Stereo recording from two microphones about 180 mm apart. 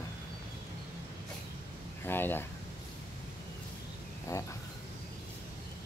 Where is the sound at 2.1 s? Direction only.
10° left (ahead or behind).